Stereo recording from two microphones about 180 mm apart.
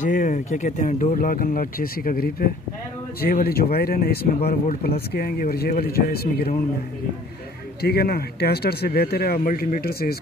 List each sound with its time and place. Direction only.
0.0 s speech: 45° left (ahead or behind)
7.8 s speech: 60° left (ahead or behind)